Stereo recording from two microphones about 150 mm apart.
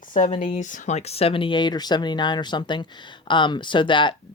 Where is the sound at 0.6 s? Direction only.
60° left (ahead or behind).